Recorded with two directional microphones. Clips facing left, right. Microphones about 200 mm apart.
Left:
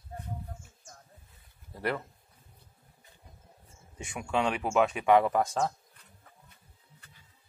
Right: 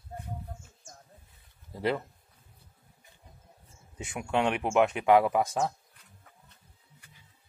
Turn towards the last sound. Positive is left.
turn(degrees=-10)  # may be behind; listen again after turning